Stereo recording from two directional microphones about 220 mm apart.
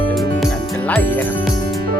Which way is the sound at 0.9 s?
5° left (ahead or behind).